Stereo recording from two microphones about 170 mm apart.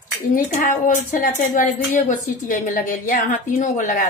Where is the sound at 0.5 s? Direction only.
55° left (ahead or behind).